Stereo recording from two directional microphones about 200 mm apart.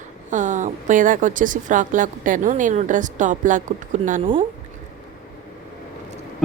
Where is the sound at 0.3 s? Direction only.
40° right (ahead or behind).